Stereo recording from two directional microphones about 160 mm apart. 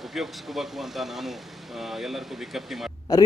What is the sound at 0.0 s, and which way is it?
Speech, centre (ahead or behind).